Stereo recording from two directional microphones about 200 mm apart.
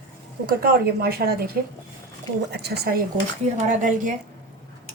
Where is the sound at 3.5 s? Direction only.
40° right (ahead or behind).